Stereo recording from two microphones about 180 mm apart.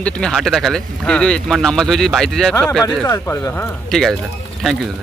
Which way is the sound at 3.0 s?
15° left (ahead or behind).